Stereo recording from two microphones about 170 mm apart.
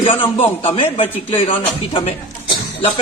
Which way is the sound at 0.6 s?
35° left (ahead or behind).